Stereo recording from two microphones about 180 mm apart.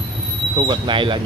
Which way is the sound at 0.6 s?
25° right (ahead or behind).